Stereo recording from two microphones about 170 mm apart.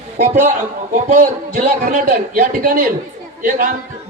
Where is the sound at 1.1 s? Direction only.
55° right (ahead or behind).